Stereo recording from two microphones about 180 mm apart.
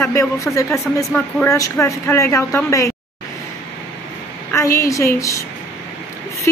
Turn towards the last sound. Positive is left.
turn(degrees=15)  # may be behind; listen again after turning